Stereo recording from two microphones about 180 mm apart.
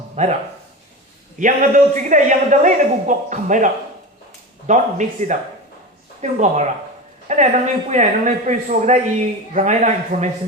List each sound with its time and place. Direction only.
0.2 s a man's voice: 40° right (ahead or behind)
1.4 s a man's voice: 45° right (ahead or behind)